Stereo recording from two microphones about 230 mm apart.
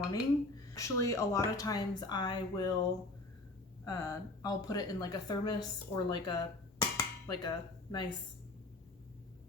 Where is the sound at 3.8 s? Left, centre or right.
Centre.